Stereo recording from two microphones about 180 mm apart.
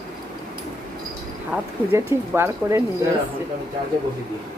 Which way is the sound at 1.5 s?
15° right (ahead or behind).